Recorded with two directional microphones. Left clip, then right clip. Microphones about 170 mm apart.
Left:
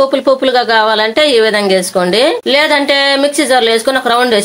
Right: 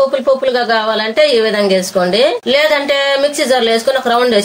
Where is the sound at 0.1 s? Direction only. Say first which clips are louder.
Left 2 dB; 60° left (ahead or behind).